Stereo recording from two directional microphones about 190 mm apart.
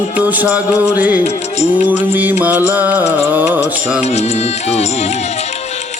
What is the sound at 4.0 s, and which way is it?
Music, 35° left (ahead or behind).